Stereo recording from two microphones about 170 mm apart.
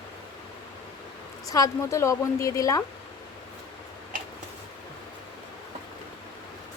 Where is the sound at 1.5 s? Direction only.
20° left (ahead or behind).